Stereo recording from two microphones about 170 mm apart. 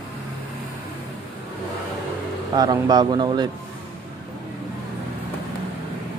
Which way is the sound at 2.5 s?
25° right (ahead or behind).